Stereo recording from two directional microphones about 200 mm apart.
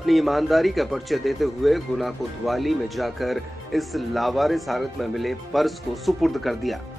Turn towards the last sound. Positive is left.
turn(degrees=0)  # may be behind; listen again after turning